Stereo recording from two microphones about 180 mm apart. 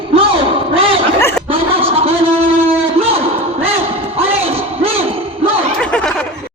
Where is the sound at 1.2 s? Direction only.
15° left (ahead or behind).